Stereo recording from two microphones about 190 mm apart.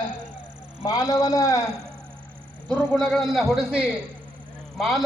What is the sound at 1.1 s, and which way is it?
Speech, 15° left (ahead or behind).